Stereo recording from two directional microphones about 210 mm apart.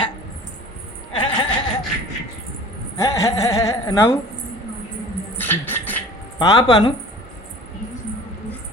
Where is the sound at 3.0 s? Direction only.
15° left (ahead or behind).